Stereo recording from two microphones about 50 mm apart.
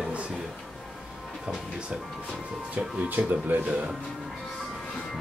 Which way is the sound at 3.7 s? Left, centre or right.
Right.